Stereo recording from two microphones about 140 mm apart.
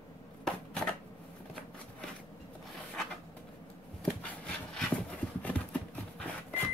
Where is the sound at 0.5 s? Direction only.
5° left (ahead or behind).